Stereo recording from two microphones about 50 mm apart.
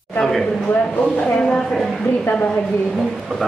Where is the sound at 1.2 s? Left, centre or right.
Centre.